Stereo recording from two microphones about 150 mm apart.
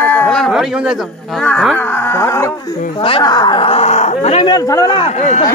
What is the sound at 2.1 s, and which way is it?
Speech, 20° left (ahead or behind).